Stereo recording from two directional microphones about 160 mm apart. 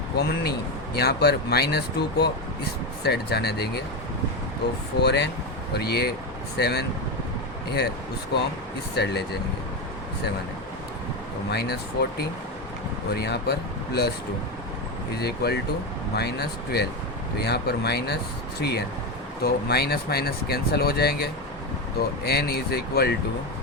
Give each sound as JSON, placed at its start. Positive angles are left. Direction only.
{"t": 0.2, "sound": "speech", "side_deg": 90}
{"t": 4.9, "sound": "speech", "side_deg": 90}
{"t": 9.0, "sound": "speech", "side_deg": 90}
{"t": 11.5, "sound": "speech", "side_deg": 85}
{"t": 15.2, "sound": "speech", "side_deg": 90}
{"t": 19.4, "sound": "speech", "side_deg": 80}